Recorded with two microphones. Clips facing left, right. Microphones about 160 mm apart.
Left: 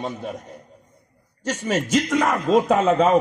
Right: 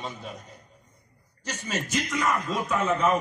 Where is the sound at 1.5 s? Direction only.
90° left.